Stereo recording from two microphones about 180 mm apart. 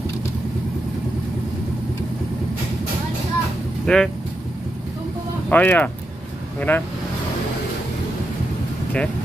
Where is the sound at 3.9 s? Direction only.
5° left (ahead or behind).